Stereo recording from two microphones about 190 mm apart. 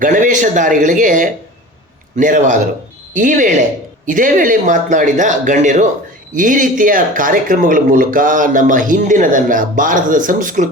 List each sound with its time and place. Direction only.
0.0 s speech: 45° right (ahead or behind)